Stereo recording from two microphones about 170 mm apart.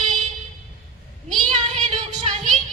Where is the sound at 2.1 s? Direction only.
30° right (ahead or behind).